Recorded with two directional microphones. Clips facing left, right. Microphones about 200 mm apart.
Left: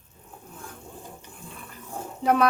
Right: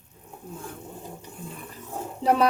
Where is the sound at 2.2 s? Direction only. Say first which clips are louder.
Even; 30° right (ahead or behind).